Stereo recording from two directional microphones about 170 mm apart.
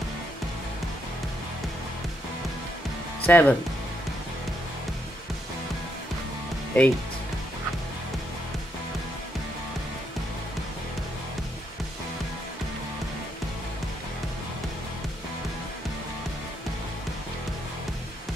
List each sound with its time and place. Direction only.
3.3 s speech: 10° left (ahead or behind)
6.7 s speech: 10° left (ahead or behind)